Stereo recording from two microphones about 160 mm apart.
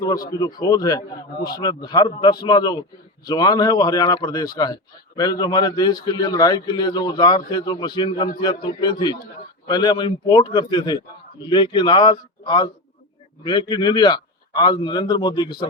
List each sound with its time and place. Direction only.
0.3 s speech: 25° left (ahead or behind)